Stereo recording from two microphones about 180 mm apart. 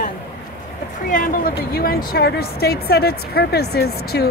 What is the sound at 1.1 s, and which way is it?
Speech, 50° left (ahead or behind).